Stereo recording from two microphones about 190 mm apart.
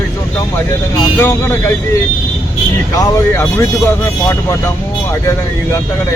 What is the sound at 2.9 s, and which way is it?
Speech, 15° left (ahead or behind).